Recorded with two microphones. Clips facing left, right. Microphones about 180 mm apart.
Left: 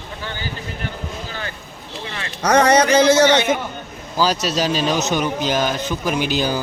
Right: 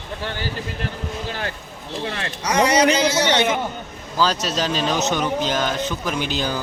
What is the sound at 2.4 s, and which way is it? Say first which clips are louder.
A man's voice: left 4 dB; 60° left (ahead or behind).